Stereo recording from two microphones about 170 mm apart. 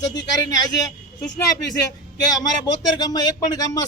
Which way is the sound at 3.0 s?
20° left (ahead or behind).